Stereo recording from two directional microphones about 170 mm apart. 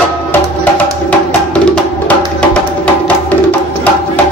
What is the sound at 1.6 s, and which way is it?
Music, 5° left (ahead or behind).